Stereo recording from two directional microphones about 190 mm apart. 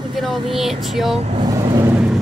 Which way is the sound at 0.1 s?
Centre (ahead or behind).